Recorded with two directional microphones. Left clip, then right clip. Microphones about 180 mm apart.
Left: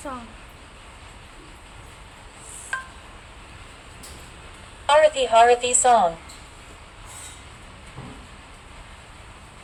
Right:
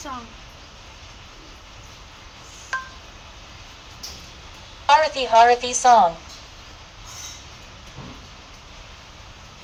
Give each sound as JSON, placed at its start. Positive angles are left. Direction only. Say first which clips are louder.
{"t": 4.9, "sound": "a woman's voice", "louder": "even", "side_deg": -20}